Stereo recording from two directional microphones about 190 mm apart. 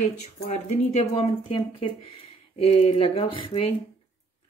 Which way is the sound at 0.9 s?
30° left (ahead or behind).